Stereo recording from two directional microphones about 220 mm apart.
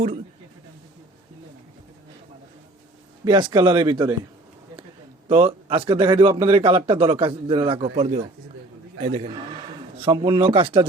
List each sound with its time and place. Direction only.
3.2 s a man's voice: 20° right (ahead or behind)
5.3 s a man's voice: 25° right (ahead or behind)